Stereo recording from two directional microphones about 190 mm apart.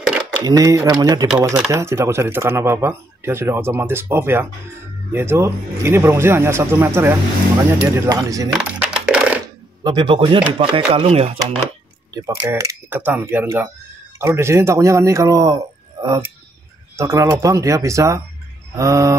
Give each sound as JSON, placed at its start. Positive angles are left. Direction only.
{"t": 0.4, "sound": "speech", "side_deg": -20}
{"t": 1.3, "sound": "speech", "side_deg": -5}
{"t": 8.5, "sound": "typing", "side_deg": -5}
{"t": 9.8, "sound": "speech", "side_deg": -25}
{"t": 12.1, "sound": "speech", "side_deg": -15}